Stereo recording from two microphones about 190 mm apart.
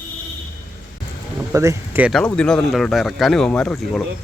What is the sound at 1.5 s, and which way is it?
Speech, 15° right (ahead or behind).